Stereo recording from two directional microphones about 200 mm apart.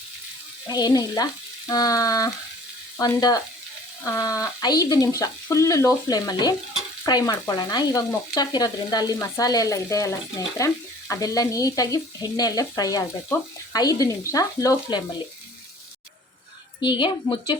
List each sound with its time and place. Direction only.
0.7 s frying: 20° left (ahead or behind)
4.0 s speech: 15° left (ahead or behind)
7.0 s frying: 20° left (ahead or behind)
11.1 s speech: 15° left (ahead or behind)
16.8 s frying: 25° left (ahead or behind)